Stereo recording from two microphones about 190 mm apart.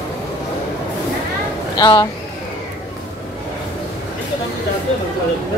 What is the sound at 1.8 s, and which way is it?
Speech, 20° left (ahead or behind).